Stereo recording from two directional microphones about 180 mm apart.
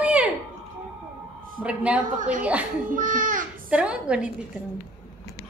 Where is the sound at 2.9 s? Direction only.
50° right (ahead or behind).